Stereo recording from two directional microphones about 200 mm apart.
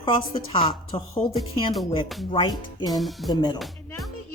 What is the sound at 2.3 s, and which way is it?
Speech, 25° left (ahead or behind).